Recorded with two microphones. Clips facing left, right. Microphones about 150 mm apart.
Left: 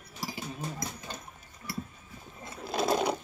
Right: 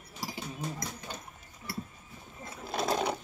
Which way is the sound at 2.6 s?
5° left (ahead or behind).